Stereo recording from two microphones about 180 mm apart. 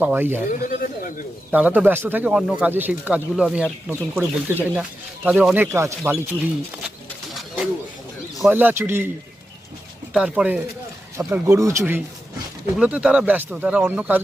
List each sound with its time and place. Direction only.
0.0 s speech: 10° right (ahead or behind)
0.6 s speech: 50° left (ahead or behind)
1.5 s speech: 10° right (ahead or behind)
7.3 s bird: 5° right (ahead or behind)
8.4 s speech: 10° right (ahead or behind)
10.1 s speech: 5° right (ahead or behind)